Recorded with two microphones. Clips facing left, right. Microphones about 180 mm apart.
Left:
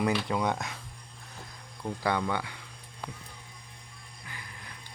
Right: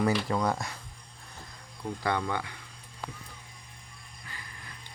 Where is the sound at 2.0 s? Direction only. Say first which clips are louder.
Left 1 dB; 10° left (ahead or behind).